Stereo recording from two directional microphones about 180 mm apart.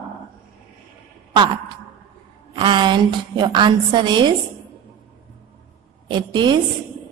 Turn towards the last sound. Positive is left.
turn(degrees=-25)  # may be behind; listen again after turning